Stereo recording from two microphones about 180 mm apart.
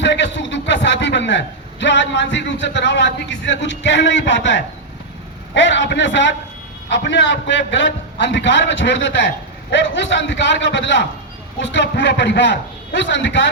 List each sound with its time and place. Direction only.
0.0 s a man's voice: 80° left